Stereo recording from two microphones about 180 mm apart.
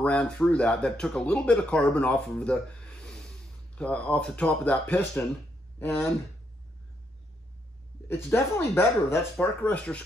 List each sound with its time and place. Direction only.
0.0 s speech: 5° left (ahead or behind)
8.1 s speech: 15° left (ahead or behind)